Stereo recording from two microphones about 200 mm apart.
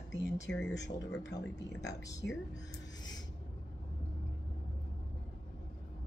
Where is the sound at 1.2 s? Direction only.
60° left (ahead or behind).